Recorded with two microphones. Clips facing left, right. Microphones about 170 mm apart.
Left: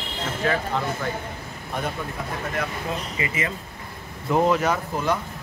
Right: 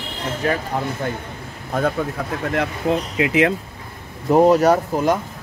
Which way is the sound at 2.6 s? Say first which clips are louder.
Right 10 dB; 70° right (ahead or behind).